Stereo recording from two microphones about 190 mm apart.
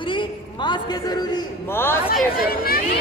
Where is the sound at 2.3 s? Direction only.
50° left (ahead or behind).